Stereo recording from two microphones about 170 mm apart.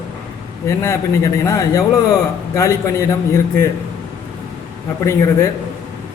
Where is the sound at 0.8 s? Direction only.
15° left (ahead or behind).